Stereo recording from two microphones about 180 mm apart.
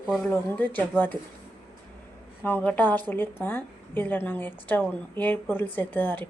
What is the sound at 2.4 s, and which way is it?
A woman's voice, 10° left (ahead or behind).